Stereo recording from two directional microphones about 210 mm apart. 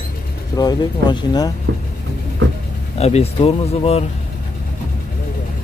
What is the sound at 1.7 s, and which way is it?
Speech, 60° right (ahead or behind).